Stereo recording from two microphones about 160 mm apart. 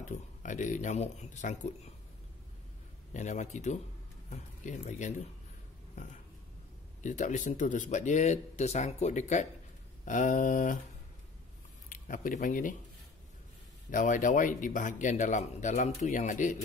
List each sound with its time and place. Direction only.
0.0 s speech: 50° left (ahead or behind)
3.1 s speech: 50° left (ahead or behind)
7.0 s speech: 50° left (ahead or behind)
11.9 s speech: 55° left (ahead or behind)
13.8 s speech: 55° left (ahead or behind)